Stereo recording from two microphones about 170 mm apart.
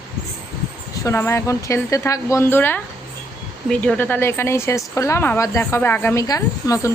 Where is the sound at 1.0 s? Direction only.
15° left (ahead or behind).